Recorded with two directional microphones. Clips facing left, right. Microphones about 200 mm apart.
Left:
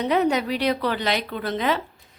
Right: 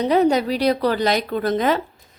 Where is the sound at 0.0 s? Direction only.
35° right (ahead or behind).